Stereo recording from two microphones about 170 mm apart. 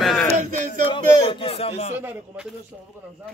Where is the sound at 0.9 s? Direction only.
30° left (ahead or behind).